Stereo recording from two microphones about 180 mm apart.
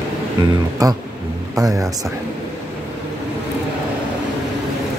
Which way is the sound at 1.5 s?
20° right (ahead or behind).